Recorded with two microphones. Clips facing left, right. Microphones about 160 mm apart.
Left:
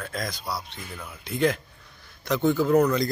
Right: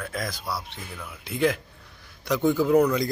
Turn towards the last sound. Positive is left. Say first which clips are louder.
# even
turn(degrees=-10)  # may be behind; listen again after turning